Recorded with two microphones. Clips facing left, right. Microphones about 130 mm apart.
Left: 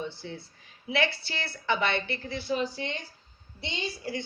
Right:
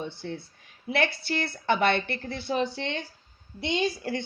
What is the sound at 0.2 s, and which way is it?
Speech, 55° right (ahead or behind).